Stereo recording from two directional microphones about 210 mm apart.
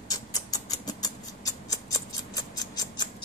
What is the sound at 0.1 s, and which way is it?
Rodents, 15° left (ahead or behind).